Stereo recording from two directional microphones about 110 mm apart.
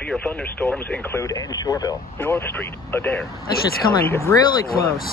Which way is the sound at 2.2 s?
20° left (ahead or behind).